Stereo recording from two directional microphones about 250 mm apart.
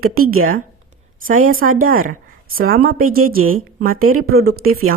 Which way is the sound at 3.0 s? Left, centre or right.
Right.